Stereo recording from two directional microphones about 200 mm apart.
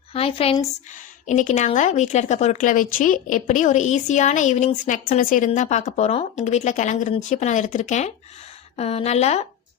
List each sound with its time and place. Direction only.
0.1 s a woman's voice: 30° left (ahead or behind)